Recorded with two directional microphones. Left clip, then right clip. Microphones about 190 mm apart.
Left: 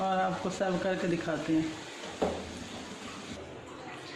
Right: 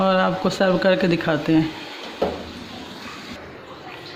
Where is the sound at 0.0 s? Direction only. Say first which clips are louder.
Right 11 dB; 45° right (ahead or behind).